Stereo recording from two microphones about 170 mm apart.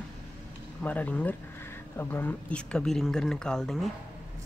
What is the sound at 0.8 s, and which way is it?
Speech, 10° left (ahead or behind).